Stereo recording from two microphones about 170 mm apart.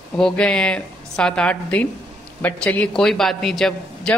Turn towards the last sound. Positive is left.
turn(degrees=5)  # may be behind; listen again after turning